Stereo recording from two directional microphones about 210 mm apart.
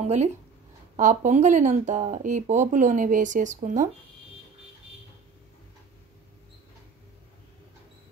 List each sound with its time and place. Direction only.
0.0 s speech: 30° right (ahead or behind)